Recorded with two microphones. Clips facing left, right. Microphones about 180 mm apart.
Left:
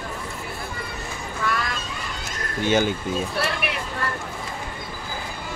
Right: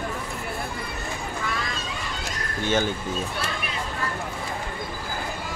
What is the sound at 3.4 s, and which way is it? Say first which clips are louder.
Speech: left 5 dB; 70° left (ahead or behind).